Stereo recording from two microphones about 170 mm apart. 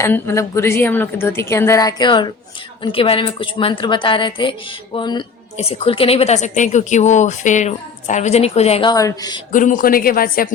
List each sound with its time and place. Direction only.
0.0 s a woman's voice: 15° left (ahead or behind); by 8.9 s 40° left (ahead or behind)
8.9 s a woman's voice: 20° left (ahead or behind)
9.5 s speech: 50° left (ahead or behind)